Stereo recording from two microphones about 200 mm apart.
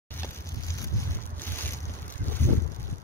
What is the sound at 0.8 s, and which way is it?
Boat, 15° left (ahead or behind).